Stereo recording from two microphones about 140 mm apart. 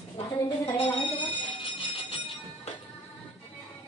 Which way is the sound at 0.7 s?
35° left (ahead or behind).